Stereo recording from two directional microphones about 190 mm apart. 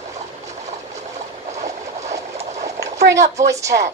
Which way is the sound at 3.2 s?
35° right (ahead or behind).